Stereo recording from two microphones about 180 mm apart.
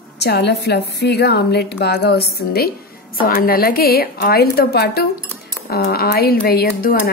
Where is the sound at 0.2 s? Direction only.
65° left (ahead or behind).